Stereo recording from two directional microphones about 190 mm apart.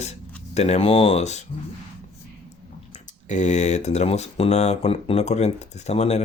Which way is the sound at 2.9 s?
40° left (ahead or behind).